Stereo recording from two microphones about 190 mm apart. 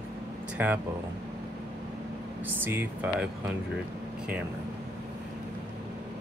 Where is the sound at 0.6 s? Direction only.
10° right (ahead or behind).